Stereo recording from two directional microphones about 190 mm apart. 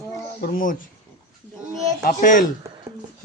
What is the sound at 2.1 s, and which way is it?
Speech, 45° left (ahead or behind).